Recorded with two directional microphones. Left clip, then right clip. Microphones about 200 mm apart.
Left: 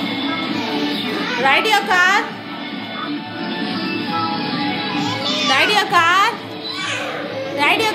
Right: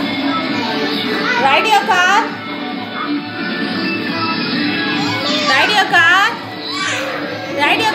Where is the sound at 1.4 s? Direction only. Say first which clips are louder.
Right 2 dB; 20° left (ahead or behind).